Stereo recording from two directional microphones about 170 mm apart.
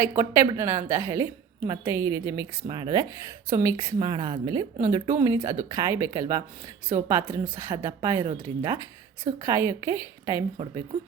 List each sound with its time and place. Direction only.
0.2 s a woman's voice: 15° right (ahead or behind)